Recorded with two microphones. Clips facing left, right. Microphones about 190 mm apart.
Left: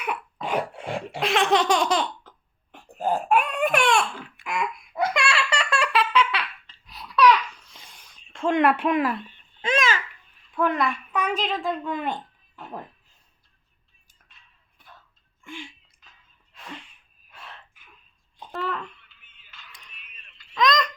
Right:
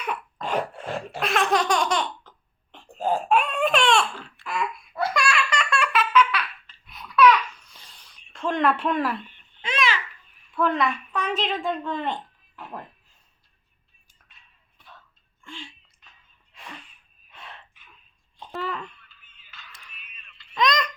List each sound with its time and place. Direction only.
0.0 s cough: 10° left (ahead or behind)
1.3 s laughter: 25° left (ahead or behind)
3.2 s baby cry: 10° left (ahead or behind); by 7.3 s 35° left (ahead or behind)
7.7 s a sound: 20° left (ahead or behind)
8.4 s a woman's voice: 15° left (ahead or behind)
9.6 s babbling: 45° left (ahead or behind)
10.5 s a woman's voice: 15° left (ahead or behind)
15.4 s sneeze: 15° left (ahead or behind)
16.5 s sneeze: centre (ahead or behind)
17.2 s dog: centre (ahead or behind)
18.5 s a sound: 10° right (ahead or behind)
19.2 s music: 15° left (ahead or behind)
19.7 s a sound: 5° right (ahead or behind)